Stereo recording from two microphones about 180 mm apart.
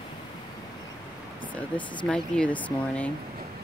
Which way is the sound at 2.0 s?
5° left (ahead or behind).